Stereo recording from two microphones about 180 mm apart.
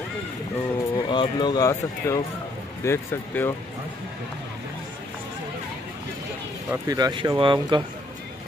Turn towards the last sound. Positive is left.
turn(degrees=-25)  # may be behind; listen again after turning